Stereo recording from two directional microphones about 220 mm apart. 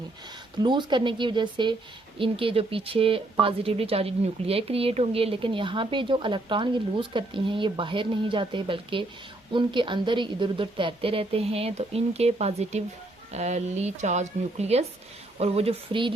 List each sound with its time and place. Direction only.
0.6 s a woman's voice: 20° right (ahead or behind)